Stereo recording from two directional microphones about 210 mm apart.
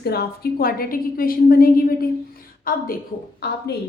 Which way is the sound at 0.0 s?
50° left (ahead or behind).